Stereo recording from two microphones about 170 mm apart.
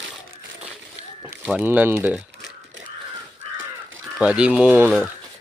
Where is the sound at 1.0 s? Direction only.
5° right (ahead or behind).